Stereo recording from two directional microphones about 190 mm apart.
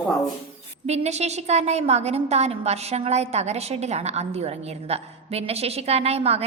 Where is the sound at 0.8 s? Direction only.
35° right (ahead or behind).